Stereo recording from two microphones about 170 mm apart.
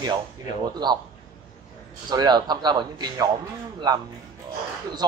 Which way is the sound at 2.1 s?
25° right (ahead or behind).